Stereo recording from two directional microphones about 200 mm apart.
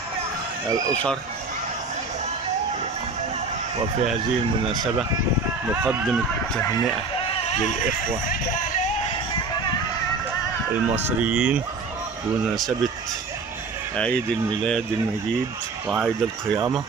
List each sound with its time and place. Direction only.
5.7 s speech: 10° right (ahead or behind)
6.6 s speech: 20° left (ahead or behind); by 8.9 s 40° left (ahead or behind)
10.7 s speech: 10° right (ahead or behind)
16.5 s speech: centre (ahead or behind)